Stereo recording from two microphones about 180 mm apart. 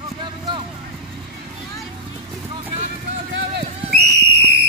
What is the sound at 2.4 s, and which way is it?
Vehicle, 35° right (ahead or behind).